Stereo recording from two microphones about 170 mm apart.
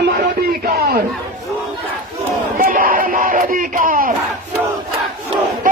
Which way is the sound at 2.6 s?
55° right (ahead or behind).